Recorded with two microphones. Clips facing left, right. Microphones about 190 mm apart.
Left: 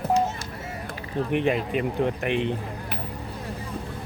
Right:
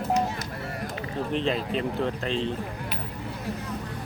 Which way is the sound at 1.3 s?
15° left (ahead or behind).